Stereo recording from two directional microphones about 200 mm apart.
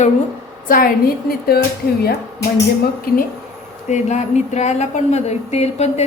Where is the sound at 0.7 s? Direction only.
45° left (ahead or behind).